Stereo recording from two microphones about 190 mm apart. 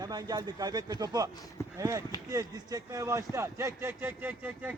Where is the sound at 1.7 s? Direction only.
15° right (ahead or behind).